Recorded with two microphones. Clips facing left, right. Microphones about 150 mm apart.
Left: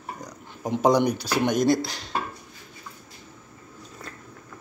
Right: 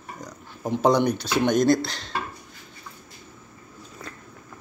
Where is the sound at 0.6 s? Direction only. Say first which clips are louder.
Even; 15° left (ahead or behind).